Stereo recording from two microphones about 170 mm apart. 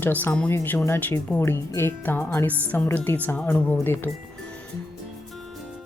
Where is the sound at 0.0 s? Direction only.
10° left (ahead or behind).